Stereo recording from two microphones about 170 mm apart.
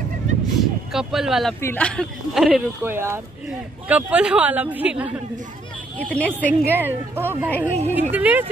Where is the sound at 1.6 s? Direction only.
10° left (ahead or behind); by 5.2 s 10° right (ahead or behind).